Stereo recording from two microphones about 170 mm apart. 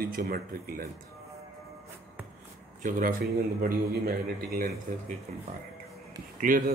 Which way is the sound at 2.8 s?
55° right (ahead or behind).